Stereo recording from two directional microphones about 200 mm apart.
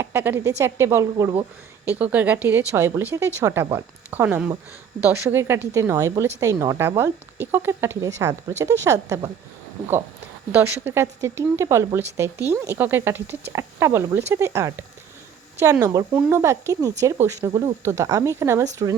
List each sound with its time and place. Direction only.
0.0 s a woman's voice: 10° right (ahead or behind)
1.1 s speech: 25° right (ahead or behind)
1.8 s a woman's voice: 10° right (ahead or behind)
10.5 s a woman's voice: 10° right (ahead or behind)